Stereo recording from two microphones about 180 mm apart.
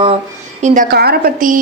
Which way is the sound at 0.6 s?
50° right (ahead or behind).